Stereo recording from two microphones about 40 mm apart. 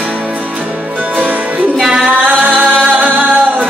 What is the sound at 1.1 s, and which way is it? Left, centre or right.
Music, right.